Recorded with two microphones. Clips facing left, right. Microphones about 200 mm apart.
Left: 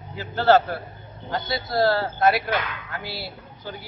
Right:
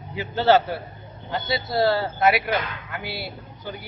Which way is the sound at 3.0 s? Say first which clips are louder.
Right 2 dB; 60° right (ahead or behind).